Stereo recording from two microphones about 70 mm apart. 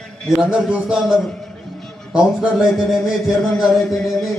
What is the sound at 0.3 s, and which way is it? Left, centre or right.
Speech, centre.